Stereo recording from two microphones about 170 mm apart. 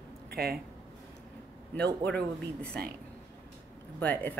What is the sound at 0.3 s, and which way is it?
Speech, 65° right (ahead or behind).